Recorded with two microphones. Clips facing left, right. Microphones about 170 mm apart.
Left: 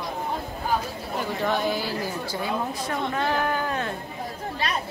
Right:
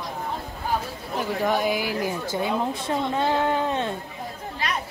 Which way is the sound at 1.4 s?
10° right (ahead or behind).